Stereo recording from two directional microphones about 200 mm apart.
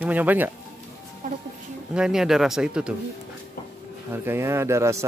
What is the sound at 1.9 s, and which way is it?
Speech, 5° right (ahead or behind).